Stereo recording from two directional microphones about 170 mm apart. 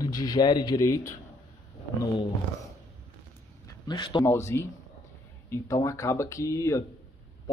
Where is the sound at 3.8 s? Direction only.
25° left (ahead or behind).